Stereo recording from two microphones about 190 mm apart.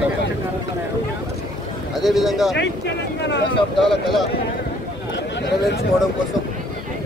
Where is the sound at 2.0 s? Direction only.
Centre (ahead or behind).